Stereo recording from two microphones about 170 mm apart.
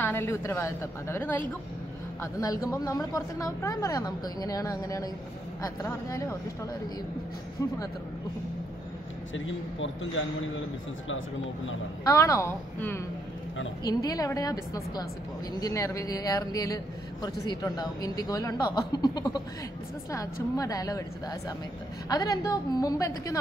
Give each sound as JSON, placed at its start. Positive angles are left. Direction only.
{"t": 0.0, "sound": "a woman's voice", "side_deg": 15}
{"t": 2.4, "sound": "a man's voice", "side_deg": 20}
{"t": 9.5, "sound": "speech", "side_deg": 90}
{"t": 12.0, "sound": "a woman's voice", "side_deg": 20}
{"t": 20.5, "sound": "a man's voice", "side_deg": 20}